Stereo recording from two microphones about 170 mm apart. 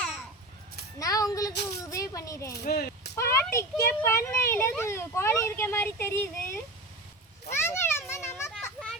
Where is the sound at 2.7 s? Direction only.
65° left (ahead or behind).